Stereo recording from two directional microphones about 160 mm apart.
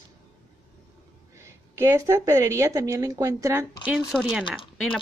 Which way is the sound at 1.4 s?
20° right (ahead or behind).